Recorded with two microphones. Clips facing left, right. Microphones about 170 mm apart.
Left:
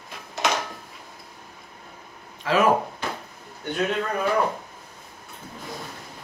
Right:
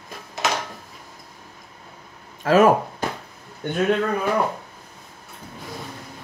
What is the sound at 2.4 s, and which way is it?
Speech, 45° right (ahead or behind).